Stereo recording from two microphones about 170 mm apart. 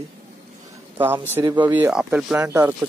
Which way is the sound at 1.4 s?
25° right (ahead or behind).